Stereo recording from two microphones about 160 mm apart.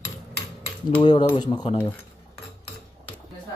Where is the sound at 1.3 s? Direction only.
30° left (ahead or behind).